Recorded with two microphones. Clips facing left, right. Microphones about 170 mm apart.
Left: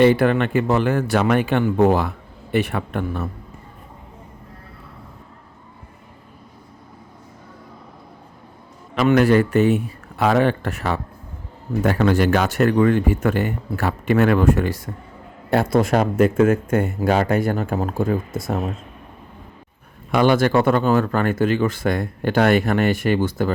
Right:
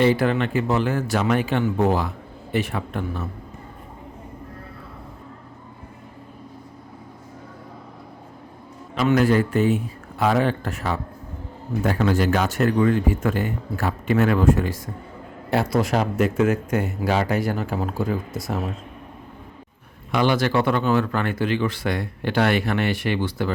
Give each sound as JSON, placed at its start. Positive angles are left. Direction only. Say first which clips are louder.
{"t": 0.0, "sound": "speech", "louder": "left 4 dB", "side_deg": 60}
{"t": 9.0, "sound": "speech", "louder": "left 3 dB", "side_deg": 65}
{"t": 15.4, "sound": "speech", "louder": "left 4 dB", "side_deg": 50}
{"t": 20.1, "sound": "speech", "louder": "left 4 dB", "side_deg": 50}